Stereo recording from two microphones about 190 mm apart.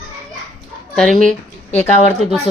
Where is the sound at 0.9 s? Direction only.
5° left (ahead or behind).